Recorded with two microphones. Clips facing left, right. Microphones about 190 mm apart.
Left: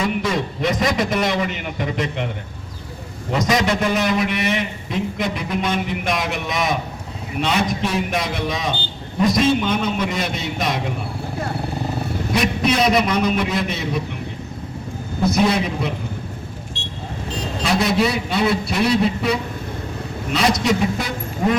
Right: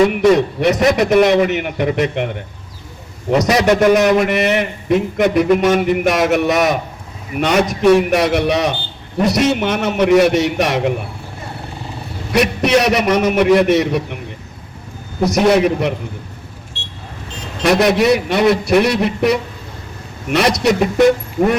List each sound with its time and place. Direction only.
0.1 s a man's voice: 70° right (ahead or behind)
3.3 s a man's voice: 70° right (ahead or behind)
4.2 s a sound: 60° right (ahead or behind)
6.3 s a man's voice: 70° right (ahead or behind)
12.3 s a man's voice: 70° right (ahead or behind)
15.2 s a man's voice: 75° right (ahead or behind)
16.7 s vehicle: 15° left (ahead or behind)
17.6 s a man's voice: 70° right (ahead or behind)